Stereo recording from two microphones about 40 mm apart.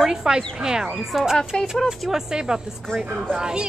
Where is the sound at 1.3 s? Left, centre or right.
Centre.